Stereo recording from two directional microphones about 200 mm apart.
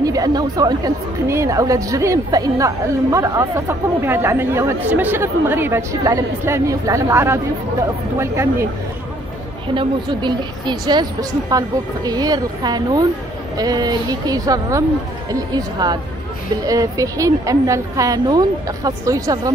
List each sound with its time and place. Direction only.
0.0 s a woman's voice: 20° right (ahead or behind)
9.8 s a woman's voice: 20° right (ahead or behind)